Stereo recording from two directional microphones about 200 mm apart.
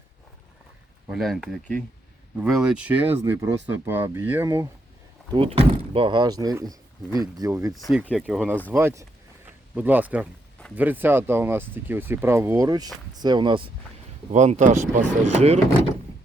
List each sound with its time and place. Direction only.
1.1 s speech: centre (ahead or behind)
5.3 s speech: 30° right (ahead or behind)
7.7 s speech: centre (ahead or behind); by 13.7 s 25° right (ahead or behind)
14.3 s speech: 35° right (ahead or behind)